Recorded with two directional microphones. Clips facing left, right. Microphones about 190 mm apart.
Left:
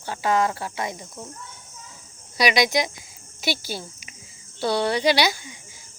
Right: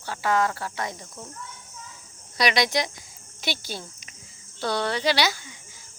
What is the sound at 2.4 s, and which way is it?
Speech, 5° left (ahead or behind).